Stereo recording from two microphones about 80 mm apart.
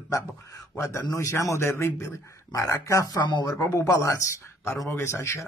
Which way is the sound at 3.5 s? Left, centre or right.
Left.